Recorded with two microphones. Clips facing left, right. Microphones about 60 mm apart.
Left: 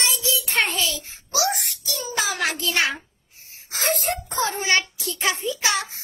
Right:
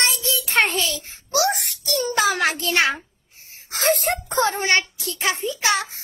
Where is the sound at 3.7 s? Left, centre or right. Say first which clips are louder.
Right 4 dB; right.